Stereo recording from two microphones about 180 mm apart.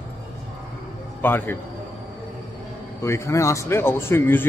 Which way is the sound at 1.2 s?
10° left (ahead or behind).